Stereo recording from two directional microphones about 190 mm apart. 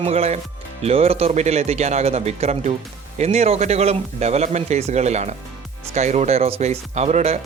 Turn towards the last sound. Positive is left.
turn(degrees=-35)  # may be behind; listen again after turning